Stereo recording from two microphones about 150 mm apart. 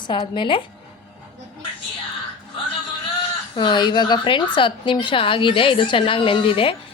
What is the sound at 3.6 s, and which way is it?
A woman's voice, 30° left (ahead or behind).